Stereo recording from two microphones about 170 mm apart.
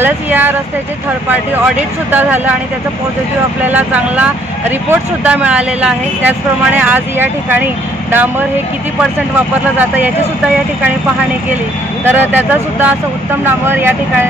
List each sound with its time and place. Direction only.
0.0 s speech: 10° right (ahead or behind)
2.0 s speech: 10° right (ahead or behind)
3.6 s speech: 10° right (ahead or behind)
9.8 s speech: 10° right (ahead or behind)
12.0 s speech: 10° right (ahead or behind)